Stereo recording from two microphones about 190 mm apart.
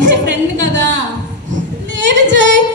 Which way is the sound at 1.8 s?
70° right (ahead or behind).